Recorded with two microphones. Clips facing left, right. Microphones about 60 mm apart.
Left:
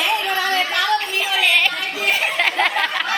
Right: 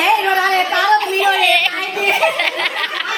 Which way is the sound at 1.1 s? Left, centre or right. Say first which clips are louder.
Right 5 dB; centre.